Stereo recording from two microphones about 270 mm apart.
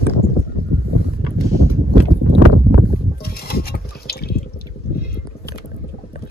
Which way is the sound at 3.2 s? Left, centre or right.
Left.